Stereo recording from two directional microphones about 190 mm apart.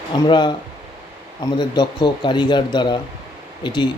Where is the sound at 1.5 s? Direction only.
20° left (ahead or behind).